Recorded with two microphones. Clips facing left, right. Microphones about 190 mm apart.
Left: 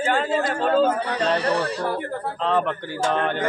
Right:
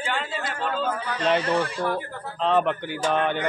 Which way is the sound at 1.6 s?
40° left (ahead or behind).